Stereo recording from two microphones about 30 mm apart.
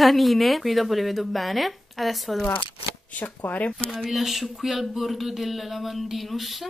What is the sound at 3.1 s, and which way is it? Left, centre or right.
Speech, left.